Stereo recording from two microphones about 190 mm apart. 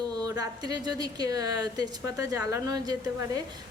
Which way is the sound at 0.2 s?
20° right (ahead or behind).